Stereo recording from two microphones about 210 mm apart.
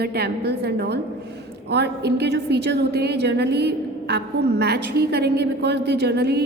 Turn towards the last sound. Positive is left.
turn(degrees=-50)  # may be behind; listen again after turning